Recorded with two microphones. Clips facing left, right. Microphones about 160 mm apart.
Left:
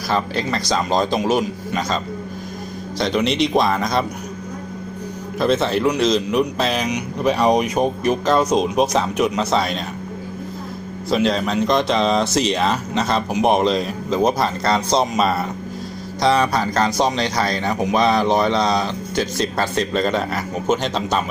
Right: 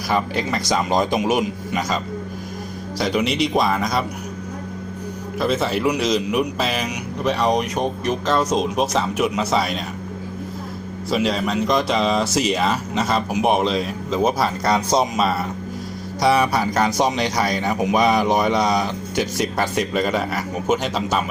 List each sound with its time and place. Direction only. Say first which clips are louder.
0.1 s speech: even; 15° right (ahead or behind)
3.0 s a man's voice: left 2 dB; 5° right (ahead or behind)
5.4 s a man's voice: left 3 dB; 5° right (ahead or behind)
11.1 s a man's voice: left 2 dB; 5° right (ahead or behind)